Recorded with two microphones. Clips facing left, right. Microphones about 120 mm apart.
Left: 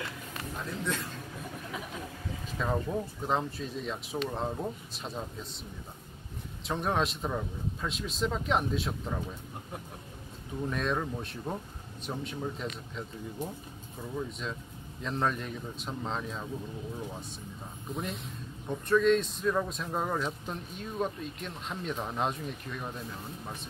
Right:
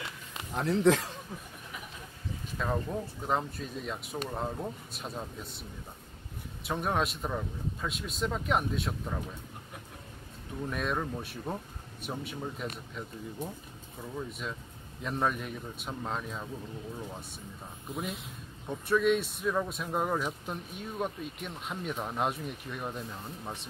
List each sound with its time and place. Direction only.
0.6 s a man's voice: 90° right
2.6 s a man's voice: centre (ahead or behind)
6.6 s a man's voice: 5° right (ahead or behind)
10.7 s a man's voice: 5° right (ahead or behind)
15.0 s speech: 10° right (ahead or behind)
17.9 s a man's voice: 5° right (ahead or behind)